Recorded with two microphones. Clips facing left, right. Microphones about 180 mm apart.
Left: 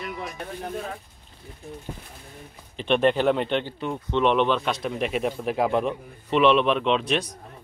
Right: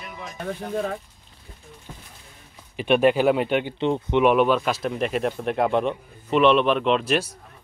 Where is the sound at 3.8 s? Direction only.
25° right (ahead or behind).